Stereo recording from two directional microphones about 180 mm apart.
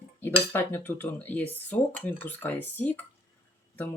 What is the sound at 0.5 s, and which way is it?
Speech, 10° left (ahead or behind).